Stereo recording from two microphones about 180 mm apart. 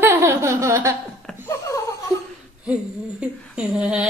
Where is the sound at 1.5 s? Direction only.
15° left (ahead or behind).